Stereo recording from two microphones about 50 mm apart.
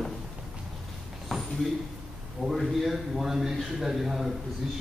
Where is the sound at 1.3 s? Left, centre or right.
Centre.